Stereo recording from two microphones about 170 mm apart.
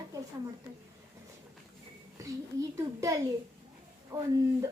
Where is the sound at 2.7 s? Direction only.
20° right (ahead or behind).